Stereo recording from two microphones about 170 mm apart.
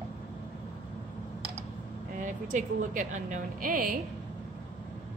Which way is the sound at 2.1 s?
50° right (ahead or behind).